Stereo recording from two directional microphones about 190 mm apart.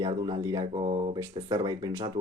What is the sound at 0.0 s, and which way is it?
Speech, 20° right (ahead or behind).